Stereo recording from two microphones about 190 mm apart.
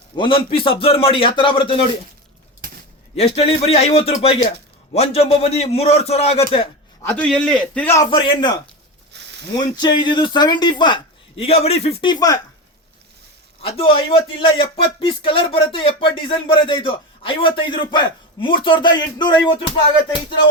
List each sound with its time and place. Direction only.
0.2 s speech: 30° left (ahead or behind)
3.2 s a man's voice: 30° left (ahead or behind)
7.0 s a man's voice: 10° left (ahead or behind)
8.0 s speech: 25° left (ahead or behind)
9.1 s a sound: 65° right (ahead or behind)
9.6 s speech: 25° left (ahead or behind)
13.6 s speech: 30° left (ahead or behind)